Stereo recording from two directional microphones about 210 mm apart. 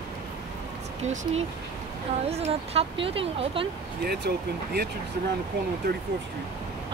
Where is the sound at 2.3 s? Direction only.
30° right (ahead or behind).